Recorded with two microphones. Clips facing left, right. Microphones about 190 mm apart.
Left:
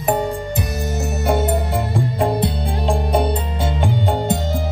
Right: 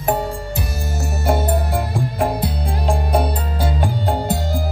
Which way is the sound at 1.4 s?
25° left (ahead or behind).